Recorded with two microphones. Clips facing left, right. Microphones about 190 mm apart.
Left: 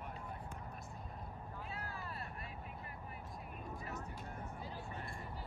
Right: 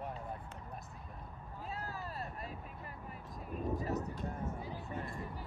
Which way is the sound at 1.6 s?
35° right (ahead or behind).